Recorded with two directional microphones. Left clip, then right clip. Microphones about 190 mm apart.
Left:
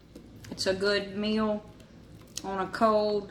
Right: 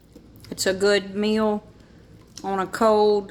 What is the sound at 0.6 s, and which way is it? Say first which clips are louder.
Speech: right 7 dB; 55° right (ahead or behind).